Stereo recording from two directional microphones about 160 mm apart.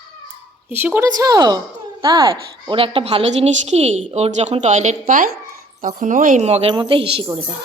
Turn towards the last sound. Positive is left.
turn(degrees=-35)  # may be behind; listen again after turning